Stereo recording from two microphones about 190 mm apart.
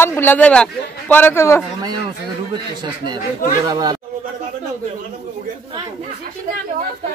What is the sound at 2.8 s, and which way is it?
Speech, 25° right (ahead or behind).